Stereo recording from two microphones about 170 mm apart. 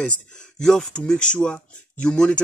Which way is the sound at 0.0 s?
5° left (ahead or behind).